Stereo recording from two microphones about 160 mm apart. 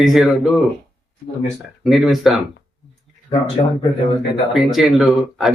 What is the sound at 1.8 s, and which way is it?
Speech, centre (ahead or behind).